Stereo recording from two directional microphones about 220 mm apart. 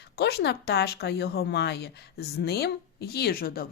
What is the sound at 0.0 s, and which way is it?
A woman's voice, 50° left (ahead or behind).